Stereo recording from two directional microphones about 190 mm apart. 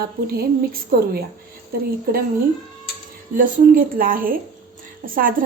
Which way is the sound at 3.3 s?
45° right (ahead or behind).